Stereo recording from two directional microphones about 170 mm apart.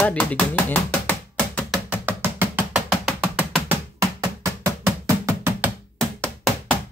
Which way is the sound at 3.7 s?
20° right (ahead or behind).